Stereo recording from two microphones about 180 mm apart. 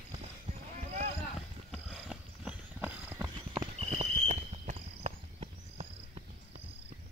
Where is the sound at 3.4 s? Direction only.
30° right (ahead or behind).